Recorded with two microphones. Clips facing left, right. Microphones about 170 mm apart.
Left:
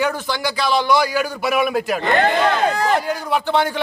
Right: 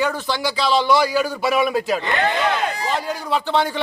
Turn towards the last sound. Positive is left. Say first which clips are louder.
# left 1 dB
turn(degrees=5)  # may be behind; listen again after turning